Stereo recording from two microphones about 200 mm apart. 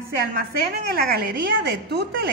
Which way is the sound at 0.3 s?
50° right (ahead or behind).